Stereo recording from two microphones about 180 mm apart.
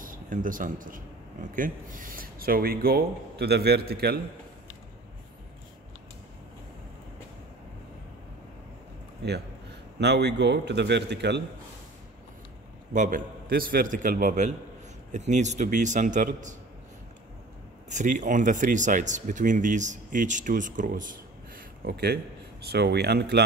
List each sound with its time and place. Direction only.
0.0 s speech: 50° right (ahead or behind)
9.9 s a man's voice: 70° right (ahead or behind)
12.9 s speech: 45° right (ahead or behind)
17.8 s speech: 45° right (ahead or behind)
21.8 s speech: 60° right (ahead or behind)